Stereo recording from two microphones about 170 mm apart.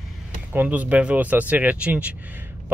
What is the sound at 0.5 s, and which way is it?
Speech, 10° right (ahead or behind).